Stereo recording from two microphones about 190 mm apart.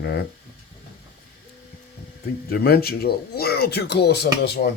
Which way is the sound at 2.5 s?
55° left (ahead or behind).